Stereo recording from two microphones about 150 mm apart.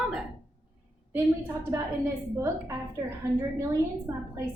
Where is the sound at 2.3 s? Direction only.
20° right (ahead or behind).